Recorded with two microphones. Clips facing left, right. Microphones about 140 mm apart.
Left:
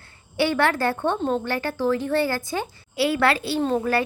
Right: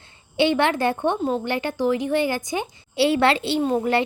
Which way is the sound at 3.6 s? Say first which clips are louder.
Even; 10° right (ahead or behind).